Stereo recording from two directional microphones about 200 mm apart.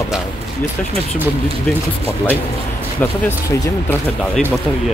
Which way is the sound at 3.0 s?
10° left (ahead or behind).